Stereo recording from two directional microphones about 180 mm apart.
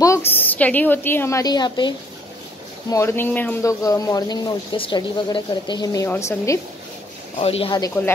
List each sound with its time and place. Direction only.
0.0 s a woman's voice: 15° left (ahead or behind)
7.3 s speech: 35° left (ahead or behind)
8.0 s a woman's voice: 15° left (ahead or behind)